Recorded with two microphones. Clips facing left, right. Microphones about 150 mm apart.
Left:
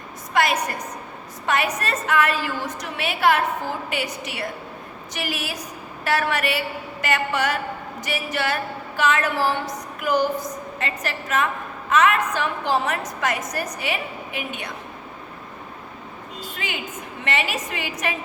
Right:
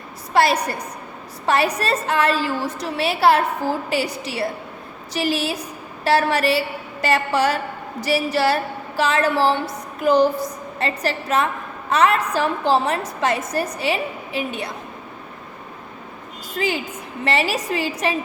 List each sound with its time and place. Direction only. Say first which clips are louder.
0.3 s a woman's voice: right 4 dB; 30° right (ahead or behind)
16.6 s a woman's voice: right 9 dB; 35° right (ahead or behind)